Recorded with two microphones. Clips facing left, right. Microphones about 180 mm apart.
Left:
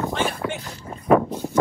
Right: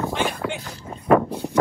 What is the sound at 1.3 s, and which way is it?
Speech, 15° right (ahead or behind).